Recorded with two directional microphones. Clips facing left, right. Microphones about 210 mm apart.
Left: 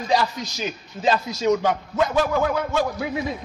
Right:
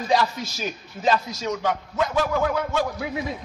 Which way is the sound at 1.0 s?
25° left (ahead or behind).